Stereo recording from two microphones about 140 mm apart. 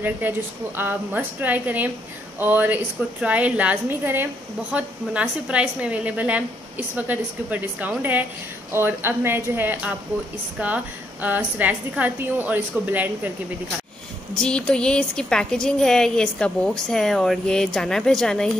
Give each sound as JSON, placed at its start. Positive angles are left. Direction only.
{"t": 0.7, "sound": "a woman's voice", "side_deg": -15}
{"t": 14.4, "sound": "a woman's voice", "side_deg": 5}